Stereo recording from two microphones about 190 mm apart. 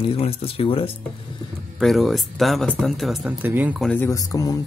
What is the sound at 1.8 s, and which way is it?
Speech, centre (ahead or behind).